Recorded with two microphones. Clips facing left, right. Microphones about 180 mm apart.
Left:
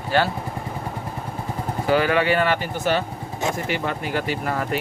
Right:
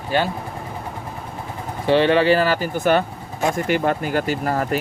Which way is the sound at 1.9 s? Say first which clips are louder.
Right 4 dB; 30° right (ahead or behind).